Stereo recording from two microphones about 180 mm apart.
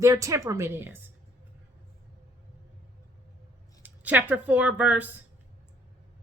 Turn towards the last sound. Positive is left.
turn(degrees=-10)  # may be behind; listen again after turning